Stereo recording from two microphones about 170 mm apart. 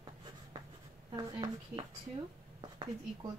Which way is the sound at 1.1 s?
25° right (ahead or behind).